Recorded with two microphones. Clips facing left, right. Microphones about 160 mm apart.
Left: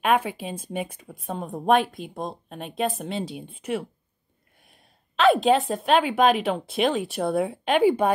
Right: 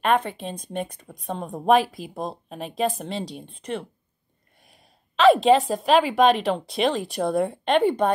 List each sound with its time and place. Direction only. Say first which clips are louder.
0.0 s a woman's voice: even; 5° left (ahead or behind)